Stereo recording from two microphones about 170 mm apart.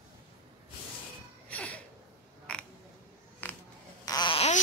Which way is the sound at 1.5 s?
10° left (ahead or behind).